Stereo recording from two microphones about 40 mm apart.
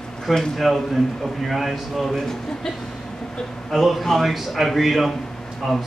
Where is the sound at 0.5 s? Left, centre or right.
Centre.